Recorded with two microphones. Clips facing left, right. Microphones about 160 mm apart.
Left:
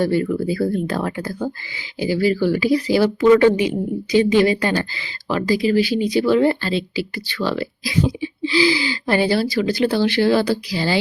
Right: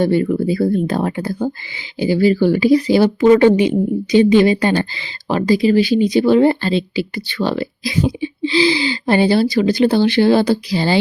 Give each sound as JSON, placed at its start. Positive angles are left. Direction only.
{"t": 0.0, "sound": "speech", "side_deg": -25}